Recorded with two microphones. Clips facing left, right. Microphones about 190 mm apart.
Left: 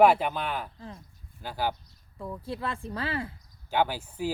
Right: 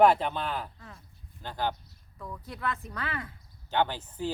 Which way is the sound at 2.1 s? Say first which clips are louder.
Left 6 dB; 30° left (ahead or behind).